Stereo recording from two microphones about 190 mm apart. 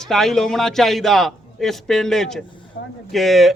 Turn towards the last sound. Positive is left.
turn(degrees=0)  # may be behind; listen again after turning